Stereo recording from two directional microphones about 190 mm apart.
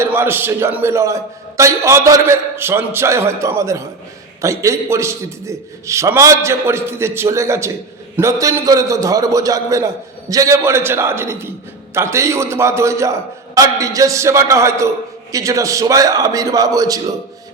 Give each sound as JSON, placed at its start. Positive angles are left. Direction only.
{"t": 0.0, "sound": "a man's voice", "side_deg": -10}